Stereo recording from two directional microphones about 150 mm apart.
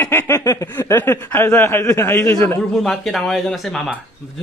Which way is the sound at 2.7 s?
Centre (ahead or behind).